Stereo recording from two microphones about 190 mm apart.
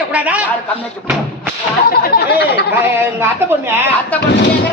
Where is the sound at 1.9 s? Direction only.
55° left (ahead or behind).